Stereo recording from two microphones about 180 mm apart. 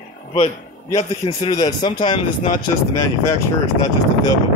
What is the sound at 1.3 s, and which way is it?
Speech, 25° left (ahead or behind).